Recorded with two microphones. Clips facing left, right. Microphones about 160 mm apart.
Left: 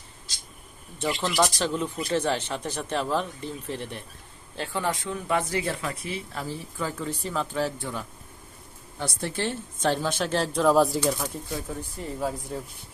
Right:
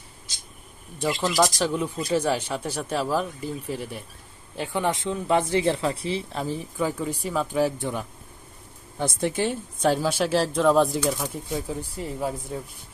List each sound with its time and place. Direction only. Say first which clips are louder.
1.5 s speech: right 2 dB; 10° right (ahead or behind)
4.5 s speech: right 3 dB; 15° right (ahead or behind)
9.2 s speech: right 4 dB; 15° right (ahead or behind)
11.4 s speech: right 3 dB; 15° right (ahead or behind)